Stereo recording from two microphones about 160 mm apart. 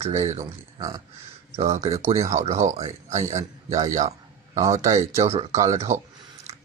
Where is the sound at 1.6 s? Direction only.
40° right (ahead or behind).